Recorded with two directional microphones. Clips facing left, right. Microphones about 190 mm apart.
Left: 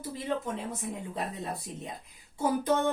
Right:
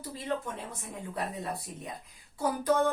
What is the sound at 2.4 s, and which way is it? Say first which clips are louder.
Speech: left 1 dB; 25° left (ahead or behind).